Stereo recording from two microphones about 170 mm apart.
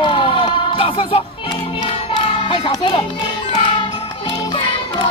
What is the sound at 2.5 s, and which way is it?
Speech, 35° left (ahead or behind).